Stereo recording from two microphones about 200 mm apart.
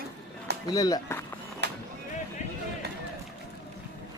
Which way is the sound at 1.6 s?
55° right (ahead or behind).